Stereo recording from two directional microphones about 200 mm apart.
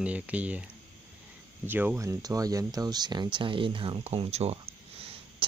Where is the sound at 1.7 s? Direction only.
10° right (ahead or behind).